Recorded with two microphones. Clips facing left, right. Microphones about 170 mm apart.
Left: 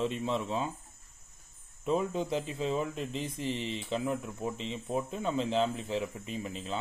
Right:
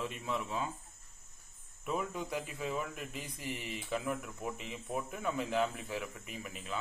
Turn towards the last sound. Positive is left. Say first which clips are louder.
# left 6 dB
turn(degrees=25)  # may be behind; listen again after turning